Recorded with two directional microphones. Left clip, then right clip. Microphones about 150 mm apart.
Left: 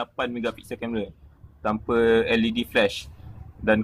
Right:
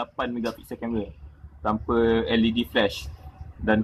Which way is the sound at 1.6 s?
45° left (ahead or behind).